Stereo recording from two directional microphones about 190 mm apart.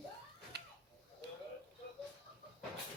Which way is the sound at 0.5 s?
60° right (ahead or behind).